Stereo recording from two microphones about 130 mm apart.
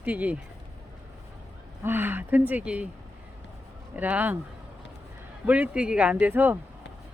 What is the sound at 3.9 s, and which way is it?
Speech, 15° right (ahead or behind).